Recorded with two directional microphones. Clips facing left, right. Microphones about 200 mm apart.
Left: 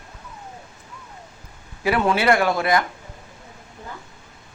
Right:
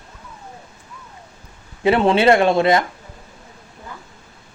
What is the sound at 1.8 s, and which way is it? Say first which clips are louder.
Speech: right 5 dB; 25° right (ahead or behind).